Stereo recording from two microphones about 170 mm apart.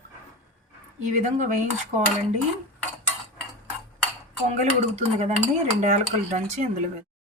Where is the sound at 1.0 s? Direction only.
45° right (ahead or behind).